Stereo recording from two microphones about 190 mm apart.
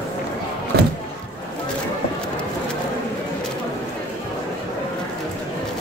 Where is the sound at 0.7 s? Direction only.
55° right (ahead or behind).